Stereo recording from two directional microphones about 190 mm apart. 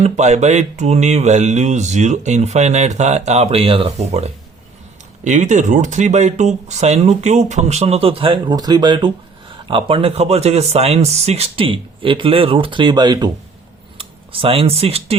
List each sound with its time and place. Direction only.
0.0 s speech: 35° right (ahead or behind)